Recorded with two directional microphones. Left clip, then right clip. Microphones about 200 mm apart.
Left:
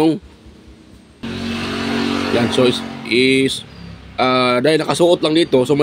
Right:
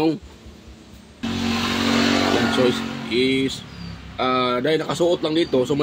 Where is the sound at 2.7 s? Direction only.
45° left (ahead or behind).